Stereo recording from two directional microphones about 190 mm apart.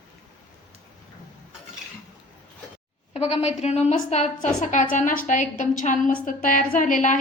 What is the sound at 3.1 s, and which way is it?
A woman's voice, 35° left (ahead or behind).